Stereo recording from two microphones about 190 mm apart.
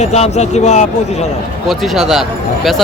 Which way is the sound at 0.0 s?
35° left (ahead or behind).